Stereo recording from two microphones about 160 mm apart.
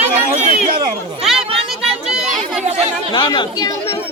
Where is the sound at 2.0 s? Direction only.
5° right (ahead or behind).